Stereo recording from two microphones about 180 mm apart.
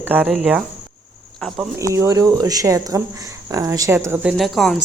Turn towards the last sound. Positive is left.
turn(degrees=0)  # may be behind; listen again after turning